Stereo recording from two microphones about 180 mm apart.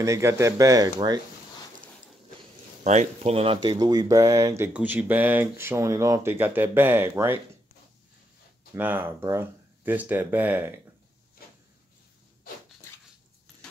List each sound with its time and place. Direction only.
0.0 s speech: 15° right (ahead or behind)
2.8 s speech: 40° right (ahead or behind)
3.7 s speech: 20° right (ahead or behind)
8.7 s speech: 10° right (ahead or behind)
11.4 s a sound: 55° left (ahead or behind)